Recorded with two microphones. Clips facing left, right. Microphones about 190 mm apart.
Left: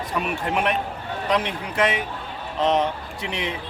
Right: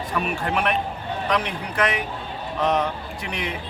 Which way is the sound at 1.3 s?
25° left (ahead or behind).